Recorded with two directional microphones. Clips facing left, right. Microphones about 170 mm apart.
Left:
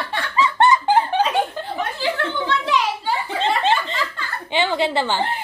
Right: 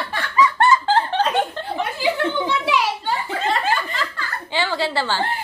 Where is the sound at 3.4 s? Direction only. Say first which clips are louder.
Left 3 dB; 25° left (ahead or behind).